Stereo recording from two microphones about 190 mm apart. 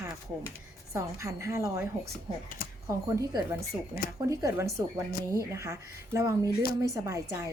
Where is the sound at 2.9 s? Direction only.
15° right (ahead or behind).